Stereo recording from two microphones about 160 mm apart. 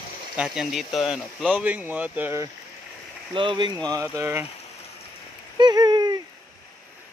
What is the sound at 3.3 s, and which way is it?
Speech, 30° right (ahead or behind).